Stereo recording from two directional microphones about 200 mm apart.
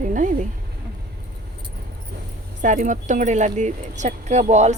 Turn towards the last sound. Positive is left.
turn(degrees=-35)  # may be behind; listen again after turning